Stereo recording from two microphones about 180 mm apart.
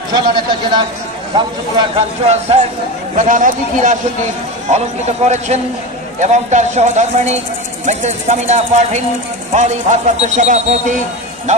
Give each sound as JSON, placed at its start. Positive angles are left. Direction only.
{"t": 0.1, "sound": "speech", "side_deg": -25}
{"t": 3.2, "sound": "speech", "side_deg": -45}